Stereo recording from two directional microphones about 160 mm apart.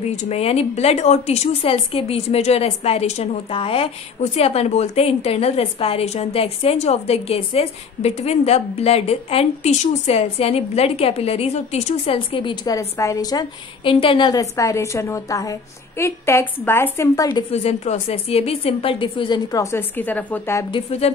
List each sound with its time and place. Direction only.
0.1 s speech: 45° left (ahead or behind)
12.7 s a woman's voice: 20° left (ahead or behind)
17.5 s speech: 40° left (ahead or behind); by 20.6 s 15° left (ahead or behind)
20.7 s speech: 40° left (ahead or behind)